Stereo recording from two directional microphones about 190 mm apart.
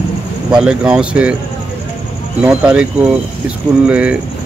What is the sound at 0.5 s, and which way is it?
Speech, 5° right (ahead or behind).